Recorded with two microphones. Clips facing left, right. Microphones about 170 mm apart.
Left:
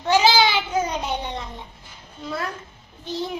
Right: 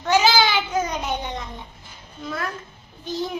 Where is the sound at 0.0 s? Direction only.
30° left (ahead or behind).